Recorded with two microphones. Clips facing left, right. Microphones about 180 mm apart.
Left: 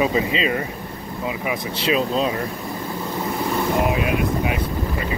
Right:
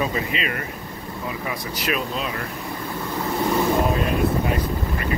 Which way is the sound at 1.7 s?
30° left (ahead or behind).